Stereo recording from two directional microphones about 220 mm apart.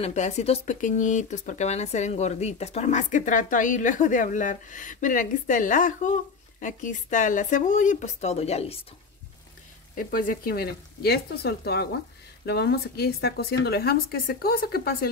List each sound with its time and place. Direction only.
0.0 s speech: 30° left (ahead or behind)
9.9 s speech: 40° left (ahead or behind)